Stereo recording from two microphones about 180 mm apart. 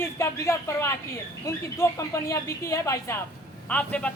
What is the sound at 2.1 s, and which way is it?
Speech, 15° left (ahead or behind).